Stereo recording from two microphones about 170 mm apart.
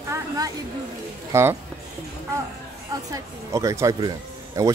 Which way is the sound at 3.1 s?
20° right (ahead or behind).